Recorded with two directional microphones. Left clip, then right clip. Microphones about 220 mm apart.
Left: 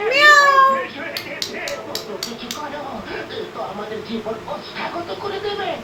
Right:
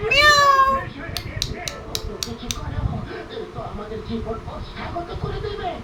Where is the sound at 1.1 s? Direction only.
55° right (ahead or behind).